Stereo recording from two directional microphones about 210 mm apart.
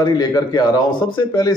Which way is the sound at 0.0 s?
20° left (ahead or behind).